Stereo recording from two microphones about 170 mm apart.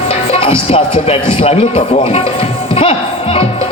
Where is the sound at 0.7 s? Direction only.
35° left (ahead or behind).